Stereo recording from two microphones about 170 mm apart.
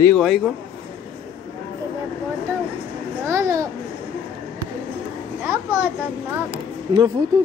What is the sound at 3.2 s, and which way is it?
Babbling, 20° right (ahead or behind).